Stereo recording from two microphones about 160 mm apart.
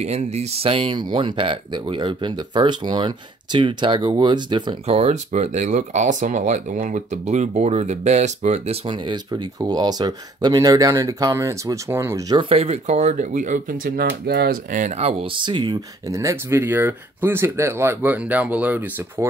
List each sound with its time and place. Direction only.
0.0 s speech: 45° right (ahead or behind); by 12.4 s 15° right (ahead or behind)
12.4 s speech: 40° right (ahead or behind); by 13.7 s 55° right (ahead or behind)
13.8 s speech: 90° right
14.7 s speech: 50° right (ahead or behind); by 19.2 s 10° right (ahead or behind)